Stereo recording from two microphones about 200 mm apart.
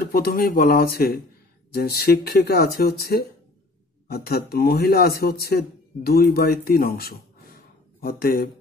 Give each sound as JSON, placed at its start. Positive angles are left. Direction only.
{"t": 0.0, "sound": "a man's voice", "side_deg": 50}